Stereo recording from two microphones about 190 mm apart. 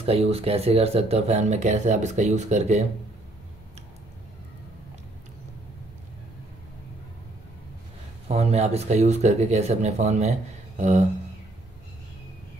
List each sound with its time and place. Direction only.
0.0 s speech: 30° right (ahead or behind)
8.3 s speech: 35° right (ahead or behind)